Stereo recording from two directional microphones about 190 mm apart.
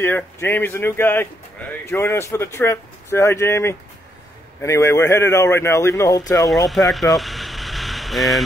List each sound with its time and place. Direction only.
0.0 s speech: 10° left (ahead or behind)
6.4 s speech: centre (ahead or behind)